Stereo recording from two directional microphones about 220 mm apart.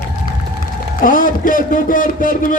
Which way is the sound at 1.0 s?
40° left (ahead or behind).